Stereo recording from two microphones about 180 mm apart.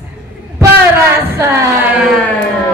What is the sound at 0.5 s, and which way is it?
A woman's voice, 15° right (ahead or behind).